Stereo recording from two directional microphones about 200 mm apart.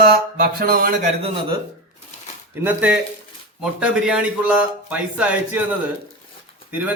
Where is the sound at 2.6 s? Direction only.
5° right (ahead or behind).